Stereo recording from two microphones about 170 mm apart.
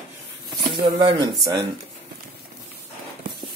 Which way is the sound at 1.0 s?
25° right (ahead or behind).